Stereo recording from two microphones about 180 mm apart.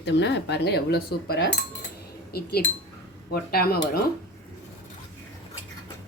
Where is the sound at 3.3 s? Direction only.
60° left (ahead or behind).